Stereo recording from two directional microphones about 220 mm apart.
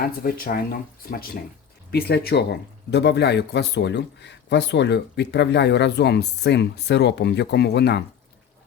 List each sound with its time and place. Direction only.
0.0 s speech: 40° left (ahead or behind)